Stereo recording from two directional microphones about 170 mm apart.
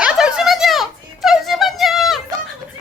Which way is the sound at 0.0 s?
5° right (ahead or behind).